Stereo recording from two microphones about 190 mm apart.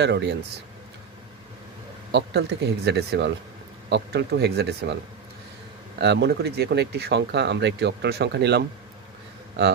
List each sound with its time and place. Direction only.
0.0 s speech: 65° right (ahead or behind)
2.1 s speech: 65° right (ahead or behind)
5.9 s speech: 65° right (ahead or behind)